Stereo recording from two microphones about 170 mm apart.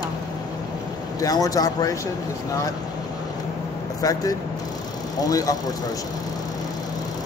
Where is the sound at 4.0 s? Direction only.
20° left (ahead or behind).